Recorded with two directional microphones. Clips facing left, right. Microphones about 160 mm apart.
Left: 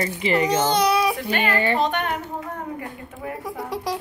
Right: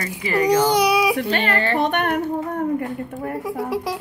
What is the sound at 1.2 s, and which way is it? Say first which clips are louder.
Music: right 1 dB; 55° right (ahead or behind).